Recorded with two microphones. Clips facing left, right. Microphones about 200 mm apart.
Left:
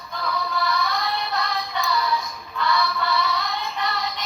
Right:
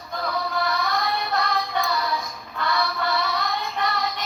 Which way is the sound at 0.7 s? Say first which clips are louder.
Even; 50° right (ahead or behind).